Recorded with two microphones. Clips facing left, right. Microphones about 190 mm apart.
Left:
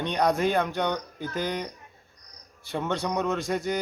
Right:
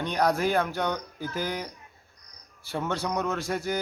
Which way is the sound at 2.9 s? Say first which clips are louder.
Left 2 dB; centre (ahead or behind).